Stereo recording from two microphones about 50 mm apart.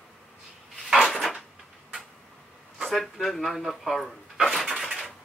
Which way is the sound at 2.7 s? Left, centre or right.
Centre.